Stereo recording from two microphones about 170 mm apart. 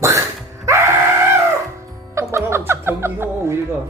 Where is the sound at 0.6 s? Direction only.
15° right (ahead or behind).